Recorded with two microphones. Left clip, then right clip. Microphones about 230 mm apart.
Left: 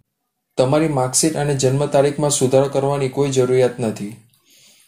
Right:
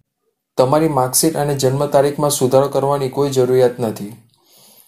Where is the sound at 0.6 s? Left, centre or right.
Centre.